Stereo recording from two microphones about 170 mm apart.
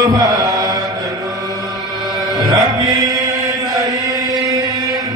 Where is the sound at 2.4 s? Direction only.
25° right (ahead or behind).